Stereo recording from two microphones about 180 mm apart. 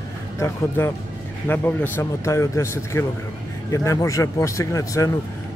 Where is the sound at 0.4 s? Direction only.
15° left (ahead or behind).